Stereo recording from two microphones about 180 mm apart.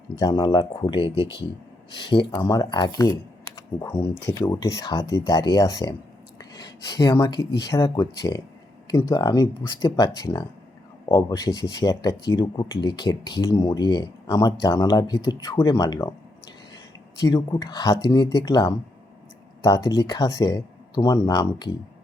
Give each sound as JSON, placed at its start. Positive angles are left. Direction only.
{"t": 0.2, "sound": "speech", "side_deg": 25}
{"t": 1.1, "sound": "speech", "side_deg": -20}
{"t": 2.3, "sound": "speech", "side_deg": 15}
{"t": 17.2, "sound": "speech", "side_deg": 20}